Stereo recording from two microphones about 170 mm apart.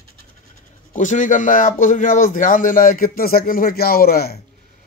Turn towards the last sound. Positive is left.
turn(degrees=65)  # may be behind; listen again after turning